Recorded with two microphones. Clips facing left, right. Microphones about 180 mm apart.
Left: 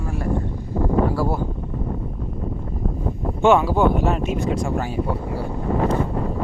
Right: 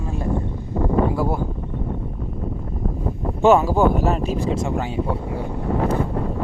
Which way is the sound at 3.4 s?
40° right (ahead or behind).